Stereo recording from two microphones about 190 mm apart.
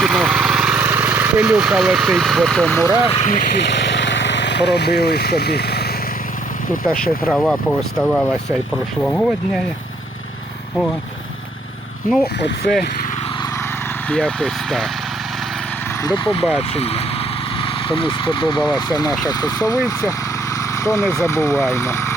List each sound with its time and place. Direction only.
0.0 s vehicle: centre (ahead or behind)
3.1 s speech: 35° left (ahead or behind)
3.5 s speech: 65° left (ahead or behind)
6.8 s speech: 5° left (ahead or behind)
12.4 s speech: 65° left (ahead or behind)
14.1 s speech: 5° left (ahead or behind)
16.0 s speech: 20° left (ahead or behind)